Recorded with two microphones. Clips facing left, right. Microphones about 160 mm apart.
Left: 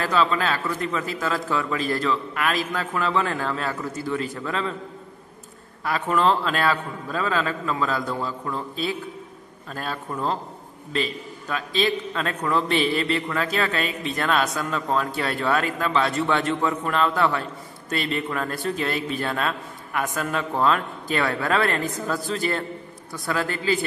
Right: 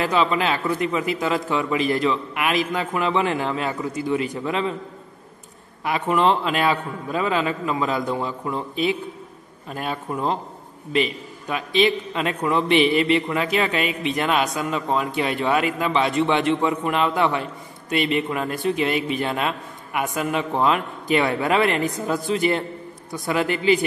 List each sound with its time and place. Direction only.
0.0 s a man's voice: 15° right (ahead or behind)
5.9 s a man's voice: 10° right (ahead or behind)